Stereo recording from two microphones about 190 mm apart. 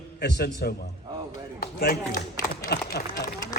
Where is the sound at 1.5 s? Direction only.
50° left (ahead or behind).